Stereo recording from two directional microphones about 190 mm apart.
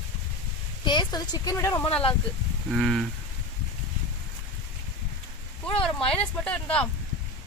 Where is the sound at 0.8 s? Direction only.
20° left (ahead or behind); by 3.1 s centre (ahead or behind).